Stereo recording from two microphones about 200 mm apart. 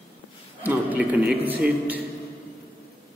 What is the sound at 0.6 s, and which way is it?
Speech, 10° right (ahead or behind).